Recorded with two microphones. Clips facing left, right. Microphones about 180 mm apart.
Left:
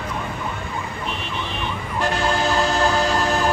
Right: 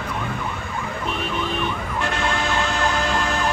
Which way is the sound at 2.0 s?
35° left (ahead or behind).